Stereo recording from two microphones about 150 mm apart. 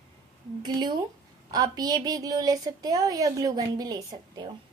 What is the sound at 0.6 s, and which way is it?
A woman's voice, 30° right (ahead or behind).